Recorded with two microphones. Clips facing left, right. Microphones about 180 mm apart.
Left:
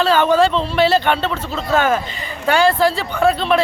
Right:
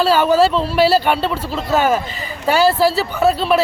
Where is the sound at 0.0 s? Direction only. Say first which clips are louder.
Right 1 dB; 10° right (ahead or behind).